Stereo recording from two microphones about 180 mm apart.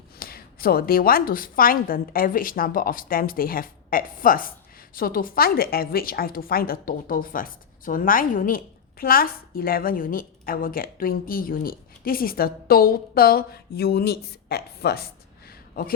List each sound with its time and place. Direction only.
0.2 s a woman's voice: 55° left (ahead or behind)